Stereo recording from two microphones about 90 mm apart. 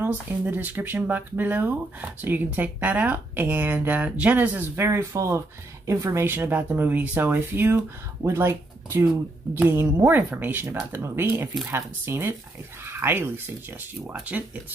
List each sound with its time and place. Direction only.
0.0 s speech: 20° right (ahead or behind)
4.8 s speech: 30° right (ahead or behind)